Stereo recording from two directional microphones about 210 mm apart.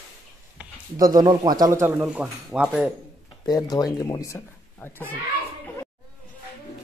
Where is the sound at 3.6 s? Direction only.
20° left (ahead or behind).